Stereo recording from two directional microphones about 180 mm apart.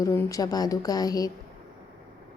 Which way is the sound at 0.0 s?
15° left (ahead or behind).